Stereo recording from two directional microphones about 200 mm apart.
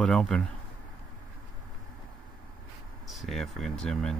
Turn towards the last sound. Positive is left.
turn(degrees=5)  # may be behind; listen again after turning